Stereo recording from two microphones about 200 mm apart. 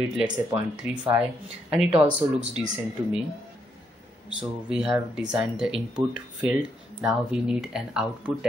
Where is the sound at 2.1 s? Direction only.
5° right (ahead or behind).